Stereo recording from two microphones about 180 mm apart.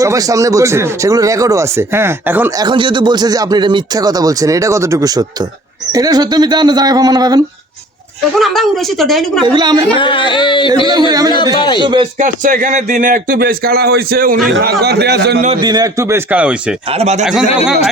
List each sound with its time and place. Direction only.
0.0 s speech: 20° right (ahead or behind)
2.6 s speech: 25° right (ahead or behind)
8.4 s a woman's voice: centre (ahead or behind)
9.5 s speech: 25° right (ahead or behind)
9.9 s a sound: 30° left (ahead or behind)
10.8 s speech: 20° right (ahead or behind)
12.2 s speech: 50° right (ahead or behind); by 15.4 s 65° right (ahead or behind)
15.6 s speech: 20° right (ahead or behind)
16.9 s speech: 35° right (ahead or behind)